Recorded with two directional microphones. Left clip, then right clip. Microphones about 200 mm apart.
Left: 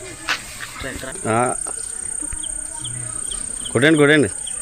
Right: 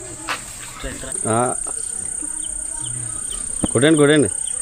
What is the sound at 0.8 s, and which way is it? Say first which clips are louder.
Cricket: even; 15° left (ahead or behind).